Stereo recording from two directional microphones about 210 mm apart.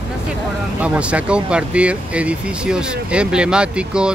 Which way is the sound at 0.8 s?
5° right (ahead or behind).